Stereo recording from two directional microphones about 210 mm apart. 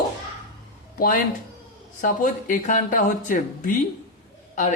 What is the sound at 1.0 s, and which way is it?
Speech, 40° left (ahead or behind).